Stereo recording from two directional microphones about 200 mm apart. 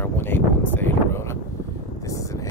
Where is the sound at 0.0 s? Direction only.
10° left (ahead or behind).